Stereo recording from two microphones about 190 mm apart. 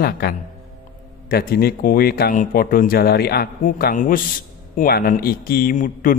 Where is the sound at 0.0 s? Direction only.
55° left (ahead or behind).